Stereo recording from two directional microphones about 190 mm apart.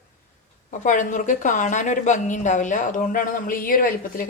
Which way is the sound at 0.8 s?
40° left (ahead or behind).